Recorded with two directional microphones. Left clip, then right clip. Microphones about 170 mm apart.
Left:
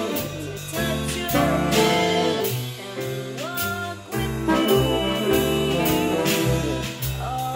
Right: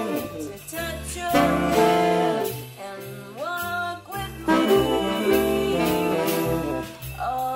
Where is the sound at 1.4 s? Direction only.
35° right (ahead or behind).